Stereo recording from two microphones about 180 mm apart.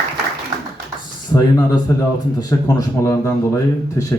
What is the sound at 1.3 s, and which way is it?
A man's voice, 20° left (ahead or behind).